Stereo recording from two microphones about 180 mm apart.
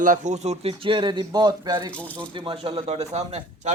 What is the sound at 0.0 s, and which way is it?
Speech, 45° right (ahead or behind).